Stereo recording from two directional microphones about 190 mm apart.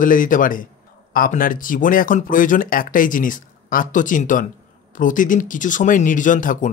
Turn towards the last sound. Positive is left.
turn(degrees=45)  # may be behind; listen again after turning